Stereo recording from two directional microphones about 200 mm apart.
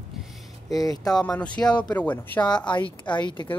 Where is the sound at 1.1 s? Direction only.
5° left (ahead or behind).